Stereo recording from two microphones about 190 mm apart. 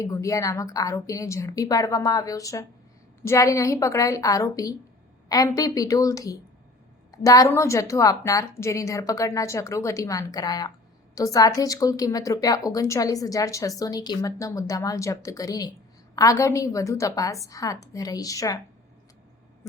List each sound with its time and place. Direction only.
0.0 s a woman's voice: 15° left (ahead or behind)